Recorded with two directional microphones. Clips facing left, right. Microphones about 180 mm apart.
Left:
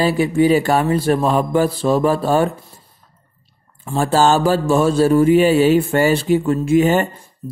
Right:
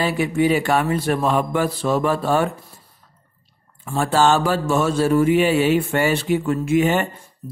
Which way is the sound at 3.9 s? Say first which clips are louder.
Left 2 dB; 35° left (ahead or behind).